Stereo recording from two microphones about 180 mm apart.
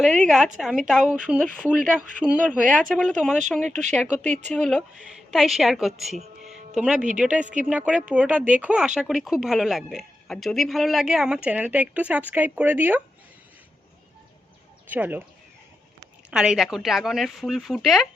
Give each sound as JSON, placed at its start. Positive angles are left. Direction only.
{"t": 0.3, "sound": "speech", "side_deg": 0}
{"t": 4.2, "sound": "speech", "side_deg": -40}
{"t": 4.5, "sound": "speech", "side_deg": 0}
{"t": 7.4, "sound": "speech", "side_deg": -45}
{"t": 7.7, "sound": "speech", "side_deg": -5}
{"t": 14.8, "sound": "speech", "side_deg": -10}
{"t": 16.3, "sound": "speech", "side_deg": -5}